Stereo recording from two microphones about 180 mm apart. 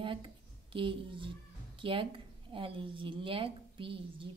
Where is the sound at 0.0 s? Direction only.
30° right (ahead or behind).